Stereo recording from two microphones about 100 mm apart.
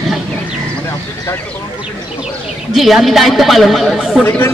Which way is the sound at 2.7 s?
Centre (ahead or behind).